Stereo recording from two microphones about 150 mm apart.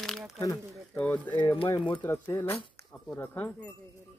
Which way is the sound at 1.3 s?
35° left (ahead or behind).